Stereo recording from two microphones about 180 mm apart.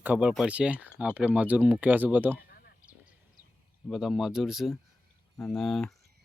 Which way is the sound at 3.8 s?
Centre (ahead or behind).